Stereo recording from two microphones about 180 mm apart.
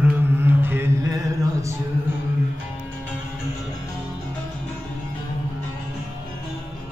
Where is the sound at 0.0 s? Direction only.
10° right (ahead or behind).